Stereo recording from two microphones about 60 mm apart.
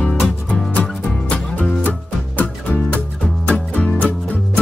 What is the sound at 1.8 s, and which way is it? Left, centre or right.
Music, left.